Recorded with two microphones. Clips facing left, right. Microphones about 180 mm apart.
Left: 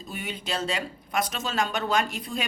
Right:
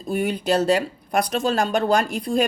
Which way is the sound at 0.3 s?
65° right (ahead or behind).